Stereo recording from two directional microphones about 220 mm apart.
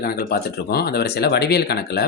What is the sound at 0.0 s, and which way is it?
Speech, 45° left (ahead or behind).